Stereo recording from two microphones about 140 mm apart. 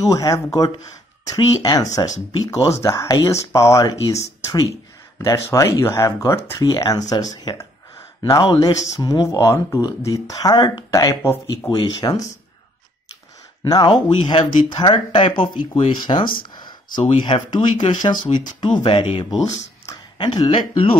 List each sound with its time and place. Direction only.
0.0 s speech: 25° left (ahead or behind)
13.7 s speech: 30° left (ahead or behind)
16.5 s a sound: 30° left (ahead or behind)
17.2 s speech: 35° left (ahead or behind)